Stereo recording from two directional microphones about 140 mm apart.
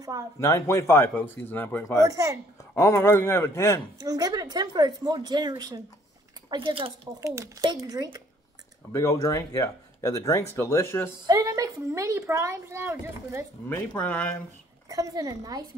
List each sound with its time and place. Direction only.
0.4 s speech: 20° left (ahead or behind)
2.0 s a woman's voice: 20° right (ahead or behind)
2.7 s speech: 20° left (ahead or behind)
4.0 s a woman's voice: 25° right (ahead or behind)
7.2 s a woman's voice: 20° right (ahead or behind)
8.9 s speech: 25° left (ahead or behind)
11.2 s a woman's voice: 25° right (ahead or behind)
13.7 s speech: 10° left (ahead or behind)
14.9 s a woman's voice: 25° right (ahead or behind)